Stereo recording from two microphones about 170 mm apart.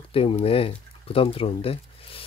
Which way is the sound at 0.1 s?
35° left (ahead or behind).